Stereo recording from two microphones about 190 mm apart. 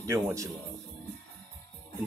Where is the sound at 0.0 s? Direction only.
15° right (ahead or behind).